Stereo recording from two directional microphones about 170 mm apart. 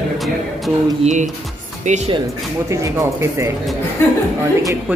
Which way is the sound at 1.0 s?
45° right (ahead or behind).